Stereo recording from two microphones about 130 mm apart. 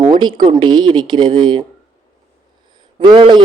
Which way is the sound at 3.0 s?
40° right (ahead or behind).